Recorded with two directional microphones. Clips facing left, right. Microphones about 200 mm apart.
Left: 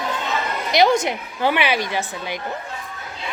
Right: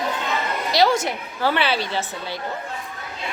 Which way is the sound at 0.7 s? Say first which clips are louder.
Left 2 dB; 20° left (ahead or behind).